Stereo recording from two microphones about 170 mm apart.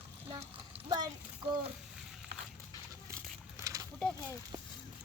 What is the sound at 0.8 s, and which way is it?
Speech, 25° right (ahead or behind).